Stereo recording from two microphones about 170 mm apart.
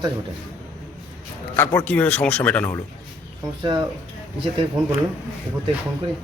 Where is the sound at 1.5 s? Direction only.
10° left (ahead or behind).